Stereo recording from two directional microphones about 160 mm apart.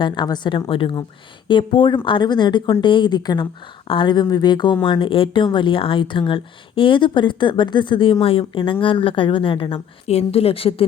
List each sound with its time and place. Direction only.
0.0 s speech: 25° left (ahead or behind)